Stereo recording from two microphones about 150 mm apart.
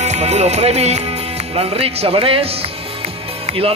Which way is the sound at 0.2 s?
45° right (ahead or behind).